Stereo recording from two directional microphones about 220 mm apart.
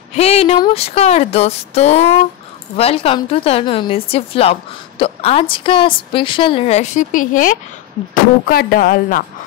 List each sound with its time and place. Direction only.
0.1 s a woman's voice: 30° left (ahead or behind)